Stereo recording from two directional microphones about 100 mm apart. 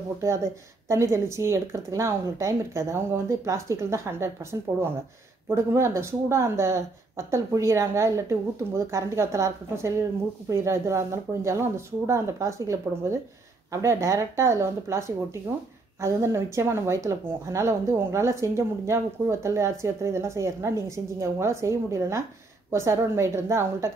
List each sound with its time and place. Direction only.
0.2 s a woman's voice: 30° right (ahead or behind)